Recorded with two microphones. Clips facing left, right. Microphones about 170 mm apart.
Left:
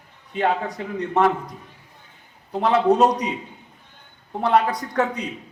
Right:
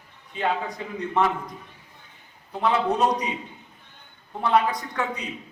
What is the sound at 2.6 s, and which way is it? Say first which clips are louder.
Speech: left 5 dB; 45° left (ahead or behind).